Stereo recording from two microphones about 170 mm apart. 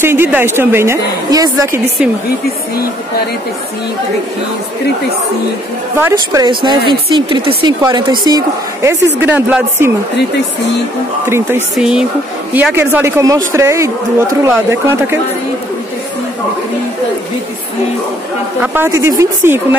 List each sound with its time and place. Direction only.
0.0 s a woman's voice: 15° right (ahead or behind)
6.1 s a woman's voice: 25° right (ahead or behind)
9.2 s a woman's voice: 10° right (ahead or behind)
11.2 s a woman's voice: 15° right (ahead or behind)
11.7 s a woman's voice: 5° right (ahead or behind)
18.6 s a woman's voice: 10° right (ahead or behind)